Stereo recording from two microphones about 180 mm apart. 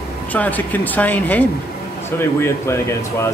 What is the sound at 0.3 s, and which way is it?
A man's voice, 10° left (ahead or behind).